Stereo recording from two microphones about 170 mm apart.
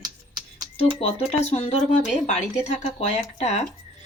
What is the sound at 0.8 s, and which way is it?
Speech, 35° left (ahead or behind).